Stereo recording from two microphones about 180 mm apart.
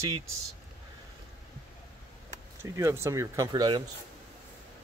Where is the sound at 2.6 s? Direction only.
15° right (ahead or behind).